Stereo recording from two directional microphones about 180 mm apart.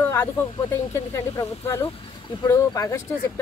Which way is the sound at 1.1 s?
15° left (ahead or behind).